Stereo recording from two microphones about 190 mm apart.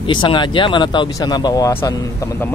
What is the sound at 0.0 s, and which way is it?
Speech, 25° left (ahead or behind).